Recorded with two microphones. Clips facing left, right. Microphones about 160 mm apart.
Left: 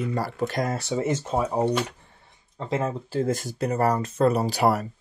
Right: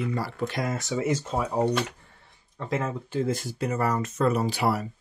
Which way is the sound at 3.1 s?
45° left (ahead or behind).